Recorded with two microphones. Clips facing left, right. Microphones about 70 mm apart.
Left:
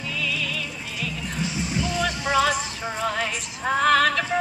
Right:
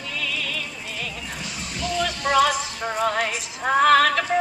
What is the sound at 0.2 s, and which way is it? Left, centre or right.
Music, right.